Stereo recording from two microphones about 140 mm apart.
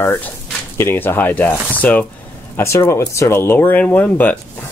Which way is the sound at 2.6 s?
20° left (ahead or behind).